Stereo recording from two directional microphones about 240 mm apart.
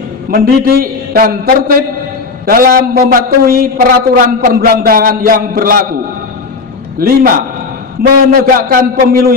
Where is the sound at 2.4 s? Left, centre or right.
Right.